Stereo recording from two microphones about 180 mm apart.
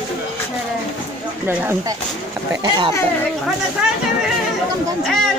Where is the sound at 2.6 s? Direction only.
25° right (ahead or behind).